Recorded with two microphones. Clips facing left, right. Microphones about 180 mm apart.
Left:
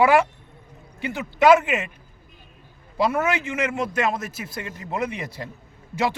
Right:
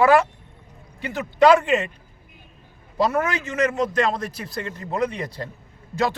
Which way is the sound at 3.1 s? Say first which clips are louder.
Even; 10° left (ahead or behind).